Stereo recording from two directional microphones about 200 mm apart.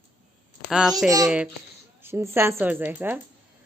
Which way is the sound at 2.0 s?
10° right (ahead or behind).